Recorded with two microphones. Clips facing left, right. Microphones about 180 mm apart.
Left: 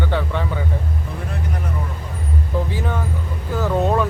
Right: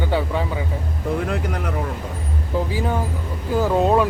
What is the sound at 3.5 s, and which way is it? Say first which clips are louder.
Speech: right 2 dB; 15° right (ahead or behind).